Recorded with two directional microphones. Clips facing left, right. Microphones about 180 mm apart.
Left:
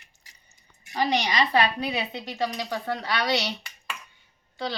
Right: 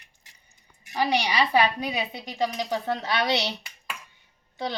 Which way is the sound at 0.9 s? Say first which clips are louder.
Even; 10° right (ahead or behind).